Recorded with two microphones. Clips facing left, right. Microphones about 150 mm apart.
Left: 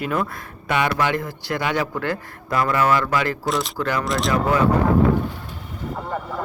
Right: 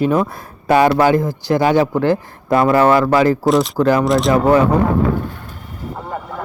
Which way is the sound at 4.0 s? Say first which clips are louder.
Right 8 dB; centre (ahead or behind).